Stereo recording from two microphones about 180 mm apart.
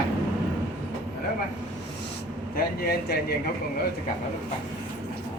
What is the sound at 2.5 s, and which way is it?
Speech, 55° left (ahead or behind).